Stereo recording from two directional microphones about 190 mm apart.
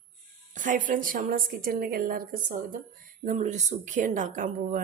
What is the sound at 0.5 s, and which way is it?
Speech, 45° right (ahead or behind).